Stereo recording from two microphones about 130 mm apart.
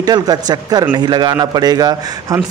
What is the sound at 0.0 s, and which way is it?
Speech, 30° right (ahead or behind).